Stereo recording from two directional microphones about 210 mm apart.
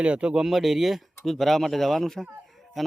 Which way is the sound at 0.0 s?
5° right (ahead or behind).